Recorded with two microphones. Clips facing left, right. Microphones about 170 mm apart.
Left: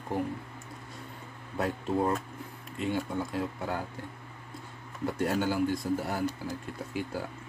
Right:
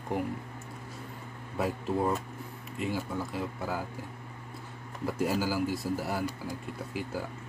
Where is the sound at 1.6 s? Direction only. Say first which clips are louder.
Left 1 dB; 5° right (ahead or behind).